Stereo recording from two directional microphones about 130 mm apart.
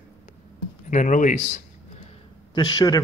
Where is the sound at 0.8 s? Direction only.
80° left; by 2.1 s 55° left (ahead or behind).